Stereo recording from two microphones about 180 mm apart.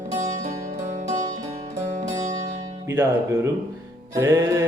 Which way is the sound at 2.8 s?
15° right (ahead or behind).